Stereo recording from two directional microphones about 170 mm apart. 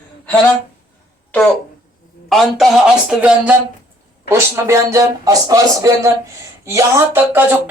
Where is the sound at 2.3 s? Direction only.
Centre (ahead or behind).